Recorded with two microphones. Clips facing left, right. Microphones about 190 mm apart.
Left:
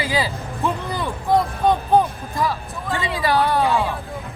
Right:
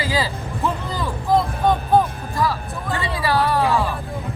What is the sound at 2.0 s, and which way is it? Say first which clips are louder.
Music: even; 15° left (ahead or behind).